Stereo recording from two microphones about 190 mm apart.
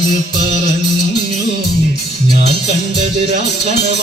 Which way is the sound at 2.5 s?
35° right (ahead or behind).